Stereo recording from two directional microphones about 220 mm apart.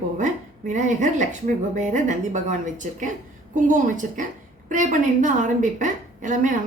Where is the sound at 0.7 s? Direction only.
35° right (ahead or behind).